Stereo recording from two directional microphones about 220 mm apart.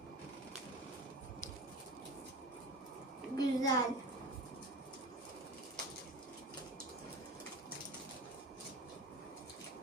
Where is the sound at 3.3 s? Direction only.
15° left (ahead or behind).